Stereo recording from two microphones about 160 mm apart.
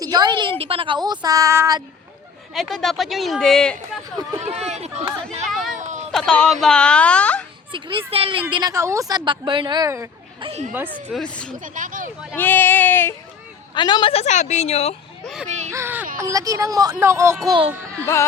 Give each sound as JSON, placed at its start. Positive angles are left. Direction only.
{"t": 0.0, "sound": "a woman's voice", "side_deg": -25}
{"t": 2.5, "sound": "speech", "side_deg": 0}
{"t": 4.4, "sound": "speech", "side_deg": -40}
{"t": 6.1, "sound": "speech", "side_deg": 5}
{"t": 7.7, "sound": "speech", "side_deg": -30}
{"t": 8.7, "sound": "a woman's voice", "side_deg": -20}
{"t": 10.4, "sound": "speech", "side_deg": -40}
{"t": 10.8, "sound": "speech", "side_deg": 5}
{"t": 11.6, "sound": "speech", "side_deg": -55}
{"t": 12.4, "sound": "speech", "side_deg": 15}
{"t": 13.7, "sound": "a woman's voice", "side_deg": 25}
{"t": 15.4, "sound": "a sound", "side_deg": -45}
{"t": 15.7, "sound": "a woman's voice", "side_deg": -15}
{"t": 18.0, "sound": "speech", "side_deg": 15}